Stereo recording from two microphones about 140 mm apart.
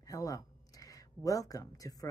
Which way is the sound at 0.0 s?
25° left (ahead or behind).